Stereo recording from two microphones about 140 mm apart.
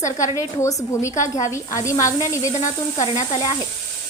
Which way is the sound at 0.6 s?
20° left (ahead or behind).